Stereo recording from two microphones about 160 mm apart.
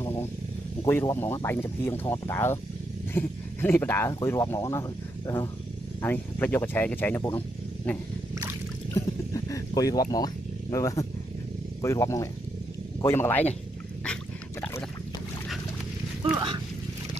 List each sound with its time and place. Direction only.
0.8 s speech: 15° left (ahead or behind)
8.9 s wild animals: 20° left (ahead or behind)
11.8 s speech: 20° left (ahead or behind)
16.3 s a sound: 25° right (ahead or behind)